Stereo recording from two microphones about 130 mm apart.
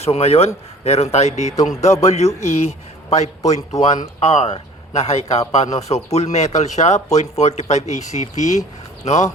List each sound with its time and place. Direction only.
0.0 s a man's voice: 55° left (ahead or behind)